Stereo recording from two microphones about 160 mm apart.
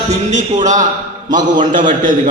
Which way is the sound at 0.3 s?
50° right (ahead or behind).